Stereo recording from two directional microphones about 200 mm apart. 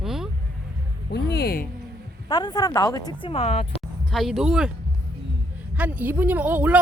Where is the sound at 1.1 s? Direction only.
55° left (ahead or behind).